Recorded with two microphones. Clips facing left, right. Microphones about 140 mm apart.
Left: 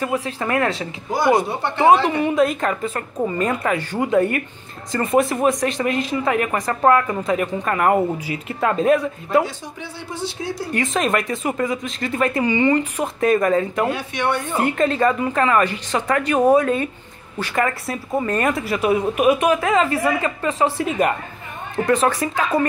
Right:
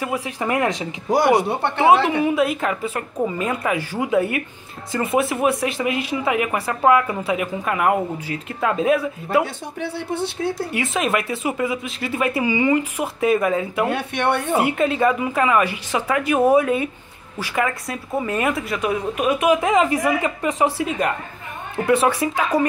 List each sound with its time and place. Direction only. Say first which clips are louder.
0.0 s speech: left 1 dB; 10° right (ahead or behind)
1.1 s speech: right 1 dB; 70° right (ahead or behind)
2.0 s a woman's voice: left 1 dB; 5° right (ahead or behind)
9.4 s speech: even; 60° right (ahead or behind)
10.7 s speech: left 6 dB; 5° right (ahead or behind)
13.9 s speech: right 1 dB; 60° right (ahead or behind)
14.6 s a woman's voice: left 3 dB; 10° right (ahead or behind); by 19.4 s 5° left (ahead or behind)
19.5 s speech: right 1 dB; 15° right (ahead or behind)